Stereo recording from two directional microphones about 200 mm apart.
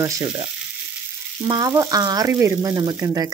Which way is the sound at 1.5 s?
15° right (ahead or behind).